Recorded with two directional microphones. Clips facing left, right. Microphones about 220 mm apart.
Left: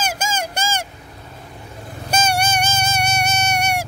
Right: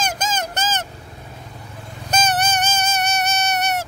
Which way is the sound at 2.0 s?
10° left (ahead or behind).